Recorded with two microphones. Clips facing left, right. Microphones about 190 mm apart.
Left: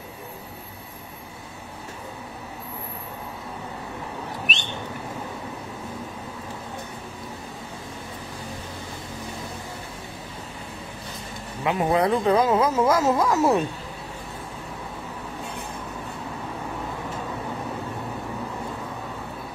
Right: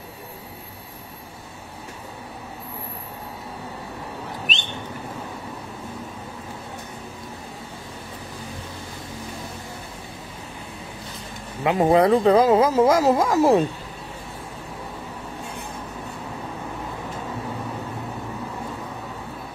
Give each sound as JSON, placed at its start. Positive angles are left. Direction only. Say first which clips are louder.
{"t": 11.6, "sound": "speech", "louder": "right 5 dB", "side_deg": -30}